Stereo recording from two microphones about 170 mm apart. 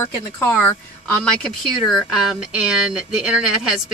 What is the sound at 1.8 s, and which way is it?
Speech, centre (ahead or behind).